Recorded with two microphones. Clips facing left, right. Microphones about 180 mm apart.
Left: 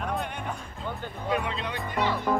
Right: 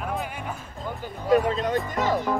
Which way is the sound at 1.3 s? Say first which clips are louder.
Right 10 dB; 45° right (ahead or behind).